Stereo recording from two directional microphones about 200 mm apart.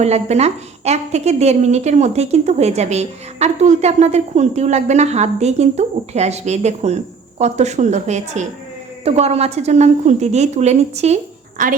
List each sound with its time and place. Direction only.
0.0 s a woman's voice: 35° right (ahead or behind)